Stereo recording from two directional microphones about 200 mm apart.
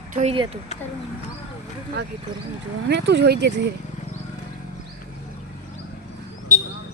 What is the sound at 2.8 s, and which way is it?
Speech, 60° right (ahead or behind).